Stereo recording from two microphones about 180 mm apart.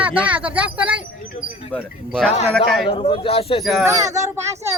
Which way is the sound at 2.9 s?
30° left (ahead or behind).